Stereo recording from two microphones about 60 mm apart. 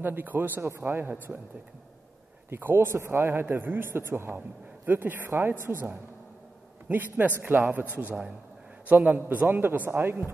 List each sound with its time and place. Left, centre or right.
0.0 s a man's voice: right
2.5 s a man's voice: right